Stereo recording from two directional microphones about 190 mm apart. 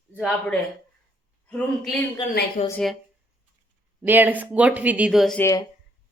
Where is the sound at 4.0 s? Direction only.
10° right (ahead or behind).